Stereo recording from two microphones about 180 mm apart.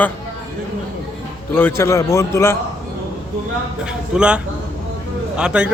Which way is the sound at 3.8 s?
5° right (ahead or behind).